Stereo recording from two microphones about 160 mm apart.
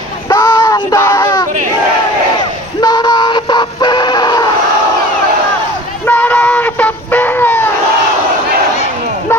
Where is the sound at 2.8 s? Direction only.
25° left (ahead or behind).